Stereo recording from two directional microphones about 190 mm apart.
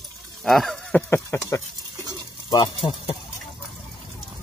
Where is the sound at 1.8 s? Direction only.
20° right (ahead or behind).